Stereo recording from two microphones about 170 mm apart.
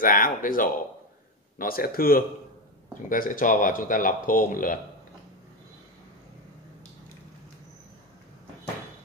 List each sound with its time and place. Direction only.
0.0 s speech: 55° left (ahead or behind)